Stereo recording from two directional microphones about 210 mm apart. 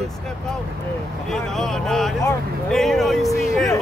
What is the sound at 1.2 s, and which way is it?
A man's voice, centre (ahead or behind).